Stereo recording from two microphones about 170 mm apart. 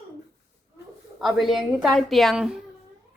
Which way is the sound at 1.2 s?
Centre (ahead or behind).